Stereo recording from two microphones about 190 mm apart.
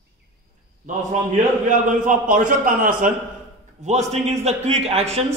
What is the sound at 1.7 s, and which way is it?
A man's voice, 45° right (ahead or behind).